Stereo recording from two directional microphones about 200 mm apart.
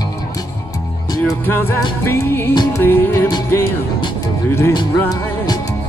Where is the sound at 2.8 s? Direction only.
10° left (ahead or behind).